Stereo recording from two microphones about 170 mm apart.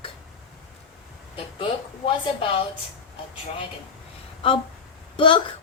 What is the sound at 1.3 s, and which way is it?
A woman's voice, 30° left (ahead or behind).